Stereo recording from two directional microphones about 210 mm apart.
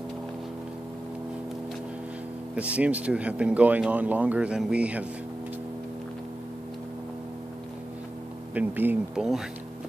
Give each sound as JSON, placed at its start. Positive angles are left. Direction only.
{"t": 2.5, "sound": "speech", "side_deg": -5}
{"t": 8.5, "sound": "speech", "side_deg": -10}